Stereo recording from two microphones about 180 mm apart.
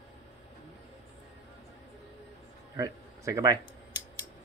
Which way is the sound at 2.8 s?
20° right (ahead or behind).